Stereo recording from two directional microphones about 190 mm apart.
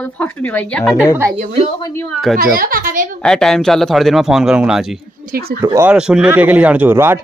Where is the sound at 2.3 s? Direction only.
50° right (ahead or behind).